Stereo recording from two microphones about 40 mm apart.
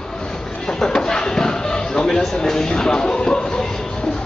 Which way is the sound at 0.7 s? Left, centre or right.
Centre.